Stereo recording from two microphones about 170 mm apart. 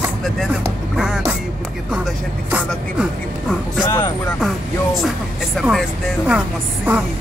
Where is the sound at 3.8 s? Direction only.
15° left (ahead or behind).